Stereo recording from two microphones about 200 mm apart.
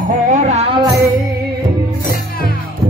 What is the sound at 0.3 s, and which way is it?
Music, 35° right (ahead or behind).